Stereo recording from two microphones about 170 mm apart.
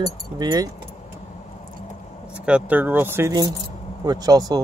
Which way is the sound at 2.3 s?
5° right (ahead or behind).